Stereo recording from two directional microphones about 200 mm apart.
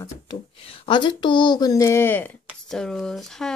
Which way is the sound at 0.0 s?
25° left (ahead or behind).